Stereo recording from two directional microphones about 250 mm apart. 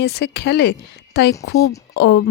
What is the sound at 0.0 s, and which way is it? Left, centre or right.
Speech, left.